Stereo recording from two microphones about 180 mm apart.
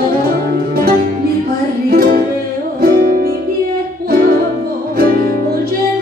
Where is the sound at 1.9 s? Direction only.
55° right (ahead or behind).